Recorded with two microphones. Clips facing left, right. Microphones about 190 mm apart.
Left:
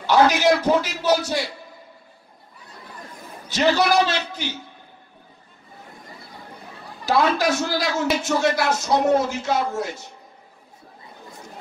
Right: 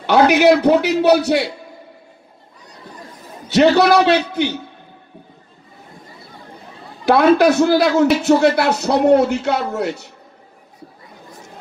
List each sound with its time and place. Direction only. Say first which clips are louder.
0.0 s a man's voice: right 5 dB; 60° right (ahead or behind)
3.4 s a man's voice: right 7 dB; 65° right (ahead or behind)
7.1 s a man's voice: right 8 dB; 60° right (ahead or behind)